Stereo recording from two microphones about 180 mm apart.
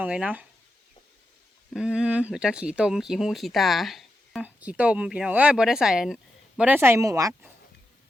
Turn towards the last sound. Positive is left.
turn(degrees=-20)  # may be behind; listen again after turning